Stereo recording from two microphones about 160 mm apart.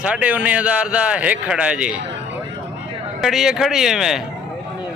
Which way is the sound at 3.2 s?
Centre (ahead or behind).